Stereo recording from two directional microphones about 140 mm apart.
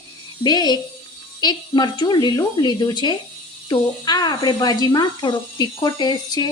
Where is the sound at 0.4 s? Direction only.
30° left (ahead or behind).